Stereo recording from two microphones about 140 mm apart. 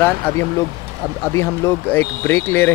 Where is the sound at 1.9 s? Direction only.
15° left (ahead or behind).